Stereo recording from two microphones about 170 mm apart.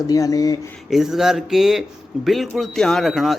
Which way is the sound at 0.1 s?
20° left (ahead or behind).